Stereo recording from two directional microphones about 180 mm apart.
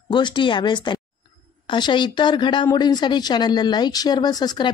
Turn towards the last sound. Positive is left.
turn(degrees=20)  # may be behind; listen again after turning